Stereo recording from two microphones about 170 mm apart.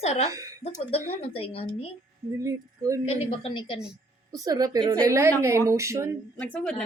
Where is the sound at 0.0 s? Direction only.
40° left (ahead or behind).